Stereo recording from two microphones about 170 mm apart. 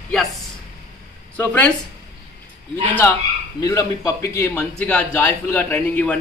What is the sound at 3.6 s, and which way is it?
Speech, 20° left (ahead or behind).